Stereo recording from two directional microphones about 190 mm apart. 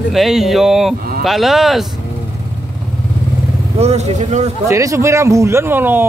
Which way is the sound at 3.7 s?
35° right (ahead or behind).